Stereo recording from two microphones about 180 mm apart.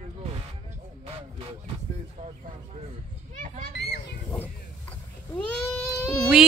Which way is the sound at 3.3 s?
50° right (ahead or behind).